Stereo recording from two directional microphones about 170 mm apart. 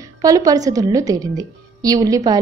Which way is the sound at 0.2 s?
20° right (ahead or behind).